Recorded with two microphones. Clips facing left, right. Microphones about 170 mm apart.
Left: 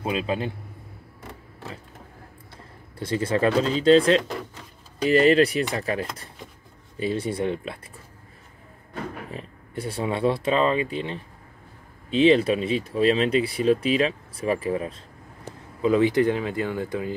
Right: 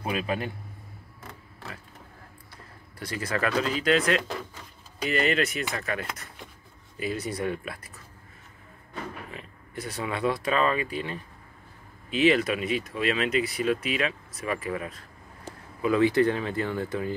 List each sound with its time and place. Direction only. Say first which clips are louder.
0.0 s speech: left 3 dB; 25° left (ahead or behind)
2.5 s speech: left 4 dB; 25° left (ahead or behind)
9.3 s speech: left 5 dB; 30° left (ahead or behind)
15.8 s speech: left 2 dB; 20° left (ahead or behind)